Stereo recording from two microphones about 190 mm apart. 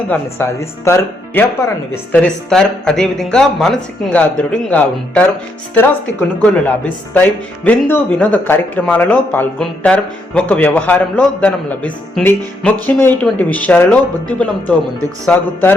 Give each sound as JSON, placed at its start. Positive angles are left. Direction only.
{"t": 0.1, "sound": "speech", "side_deg": 15}
{"t": 6.4, "sound": "speech", "side_deg": 5}